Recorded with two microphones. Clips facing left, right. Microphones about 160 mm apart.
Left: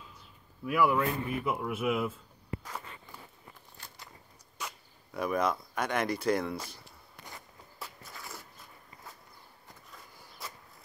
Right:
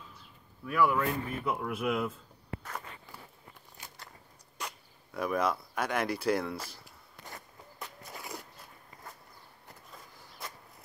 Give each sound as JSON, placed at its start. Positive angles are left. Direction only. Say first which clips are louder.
{"t": 0.7, "sound": "speech", "louder": "left 1 dB", "side_deg": 10}
{"t": 4.6, "sound": "speech", "louder": "even", "side_deg": 0}
{"t": 8.1, "sound": "a sound", "louder": "right 4 dB", "side_deg": -20}